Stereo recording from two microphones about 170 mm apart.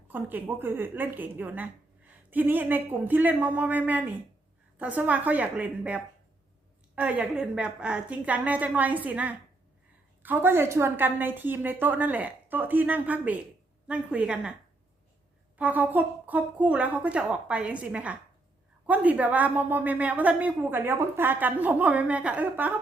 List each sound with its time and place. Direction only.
0.1 s a woman's voice: 10° right (ahead or behind)
15.5 s a woman's voice: 10° right (ahead or behind)